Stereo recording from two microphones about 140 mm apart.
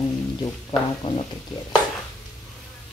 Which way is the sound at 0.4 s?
35° left (ahead or behind).